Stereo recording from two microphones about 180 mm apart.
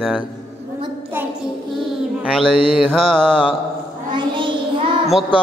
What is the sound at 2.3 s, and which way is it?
Mantra, 5° left (ahead or behind).